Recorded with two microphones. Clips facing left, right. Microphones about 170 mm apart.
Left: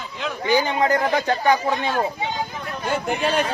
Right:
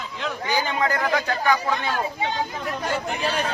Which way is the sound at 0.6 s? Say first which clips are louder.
Left 4 dB; 30° left (ahead or behind).